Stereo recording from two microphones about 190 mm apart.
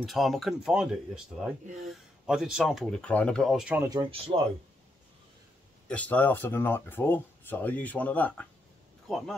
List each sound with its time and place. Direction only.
0.0 s speech: centre (ahead or behind)
3.9 s speech: 25° right (ahead or behind)
5.9 s speech: 5° left (ahead or behind)